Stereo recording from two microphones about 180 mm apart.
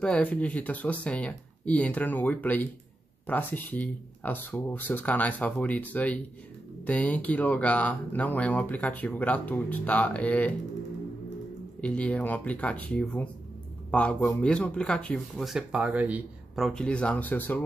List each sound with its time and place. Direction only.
0.0 s speech: 5° left (ahead or behind)
11.8 s speech: 5° left (ahead or behind)